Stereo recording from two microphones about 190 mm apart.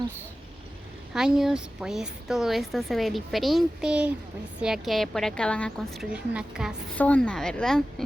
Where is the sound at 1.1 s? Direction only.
Centre (ahead or behind).